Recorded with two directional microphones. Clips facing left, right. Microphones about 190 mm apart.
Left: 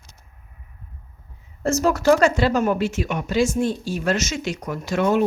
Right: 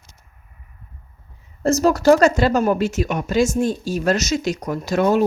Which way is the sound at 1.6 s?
35° right (ahead or behind).